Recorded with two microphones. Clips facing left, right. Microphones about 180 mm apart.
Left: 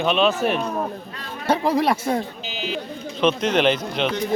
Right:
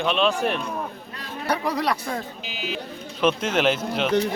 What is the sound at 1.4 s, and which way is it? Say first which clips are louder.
Speech: left 5 dB; 25° left (ahead or behind).